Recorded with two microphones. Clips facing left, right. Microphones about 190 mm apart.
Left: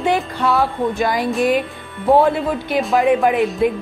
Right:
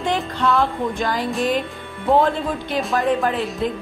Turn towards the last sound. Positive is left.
turn(degrees=15)  # may be behind; listen again after turning